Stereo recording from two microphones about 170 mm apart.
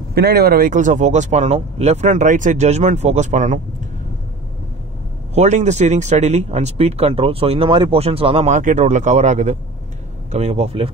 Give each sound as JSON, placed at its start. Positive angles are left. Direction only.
{"t": 0.1, "sound": "speech", "side_deg": -70}
{"t": 5.3, "sound": "speech", "side_deg": -40}